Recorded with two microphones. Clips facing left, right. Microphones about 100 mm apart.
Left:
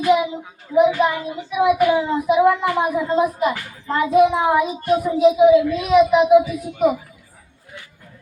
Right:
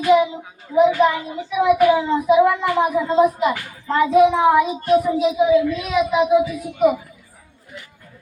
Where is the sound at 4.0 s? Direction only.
5° left (ahead or behind).